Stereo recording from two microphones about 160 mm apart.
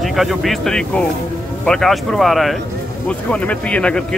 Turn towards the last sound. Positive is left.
turn(degrees=5)  # may be behind; listen again after turning